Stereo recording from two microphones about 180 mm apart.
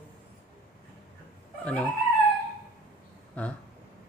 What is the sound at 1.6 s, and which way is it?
Speech, 5° left (ahead or behind).